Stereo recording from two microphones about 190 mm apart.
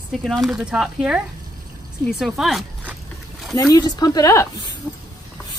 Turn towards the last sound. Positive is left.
turn(degrees=5)  # may be behind; listen again after turning